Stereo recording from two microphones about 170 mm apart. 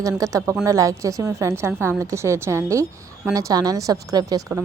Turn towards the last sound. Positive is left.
turn(degrees=-20)  # may be behind; listen again after turning